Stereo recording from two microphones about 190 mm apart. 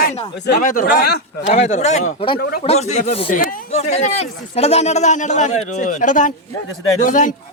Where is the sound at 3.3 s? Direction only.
45° left (ahead or behind).